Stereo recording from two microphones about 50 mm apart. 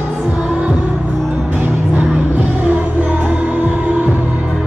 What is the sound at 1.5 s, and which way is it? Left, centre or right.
Music, right.